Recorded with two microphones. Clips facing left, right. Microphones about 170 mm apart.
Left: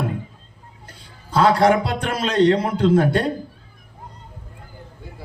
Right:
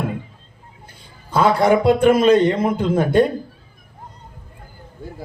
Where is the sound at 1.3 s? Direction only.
50° right (ahead or behind).